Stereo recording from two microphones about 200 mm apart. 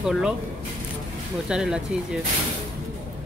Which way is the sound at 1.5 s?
5° right (ahead or behind).